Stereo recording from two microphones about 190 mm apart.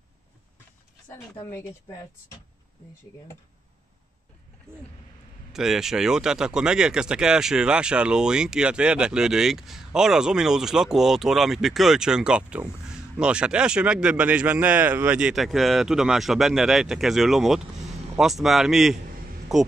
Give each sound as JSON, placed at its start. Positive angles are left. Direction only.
{"t": 1.5, "sound": "speech", "side_deg": 20}
{"t": 5.5, "sound": "speech", "side_deg": 0}